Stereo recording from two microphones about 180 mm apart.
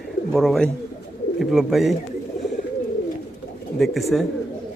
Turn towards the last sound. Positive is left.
turn(degrees=0)  # may be behind; listen again after turning